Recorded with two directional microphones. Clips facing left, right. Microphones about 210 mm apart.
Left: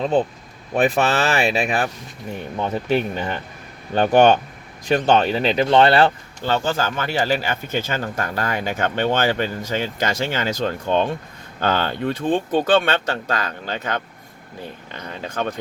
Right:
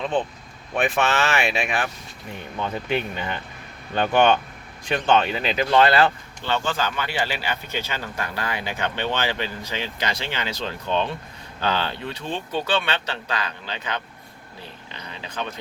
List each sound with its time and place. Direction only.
0.0 s speech: 40° left (ahead or behind)